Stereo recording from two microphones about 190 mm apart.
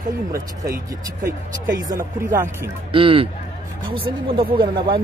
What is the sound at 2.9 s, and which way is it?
Speech, 30° right (ahead or behind).